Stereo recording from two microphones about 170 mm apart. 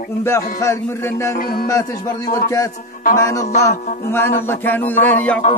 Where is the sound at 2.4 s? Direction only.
20° left (ahead or behind).